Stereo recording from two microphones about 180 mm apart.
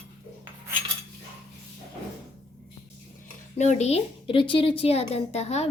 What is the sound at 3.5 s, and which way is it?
A woman's voice, 40° left (ahead or behind).